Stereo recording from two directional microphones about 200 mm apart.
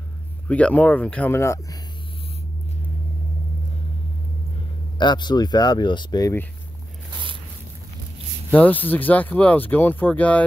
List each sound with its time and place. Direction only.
0.5 s speech: 5° left (ahead or behind)
4.9 s speech: 20° left (ahead or behind)
8.5 s speech: 10° left (ahead or behind)